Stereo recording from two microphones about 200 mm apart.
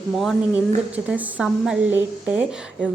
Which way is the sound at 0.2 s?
5° right (ahead or behind).